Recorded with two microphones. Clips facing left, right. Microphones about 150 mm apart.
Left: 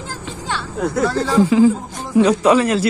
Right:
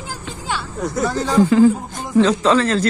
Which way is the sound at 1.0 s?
15° right (ahead or behind).